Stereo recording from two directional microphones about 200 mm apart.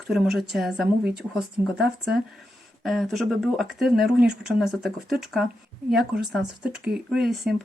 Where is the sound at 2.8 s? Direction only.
Centre (ahead or behind).